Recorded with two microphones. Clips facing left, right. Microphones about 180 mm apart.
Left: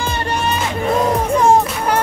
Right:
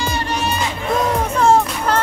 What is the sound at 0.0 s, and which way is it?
Music, 55° left (ahead or behind).